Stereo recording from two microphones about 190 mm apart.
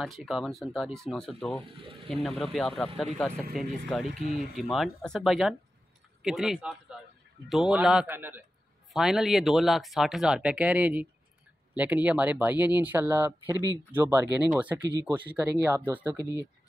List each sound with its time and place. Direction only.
0.0 s speech: centre (ahead or behind)
1.7 s speech: 25° right (ahead or behind)
2.0 s speech: centre (ahead or behind)
4.1 s speech: 45° right (ahead or behind)
4.6 s speech: centre (ahead or behind)